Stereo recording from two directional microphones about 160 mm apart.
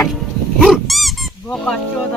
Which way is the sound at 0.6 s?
Centre (ahead or behind).